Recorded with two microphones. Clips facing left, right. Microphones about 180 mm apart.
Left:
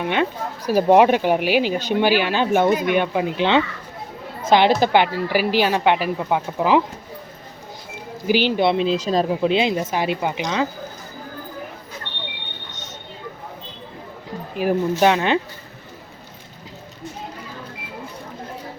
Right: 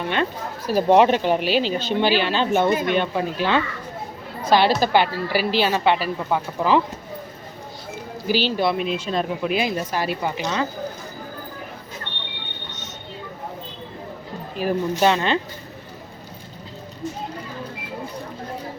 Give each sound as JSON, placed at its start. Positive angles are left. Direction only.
{"t": 0.0, "sound": "speech", "side_deg": 15}
{"t": 8.3, "sound": "a woman's voice", "side_deg": 15}
{"t": 14.5, "sound": "speech", "side_deg": 15}